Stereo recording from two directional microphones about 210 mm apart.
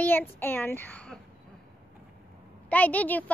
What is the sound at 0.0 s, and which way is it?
A child's voice, 10° left (ahead or behind).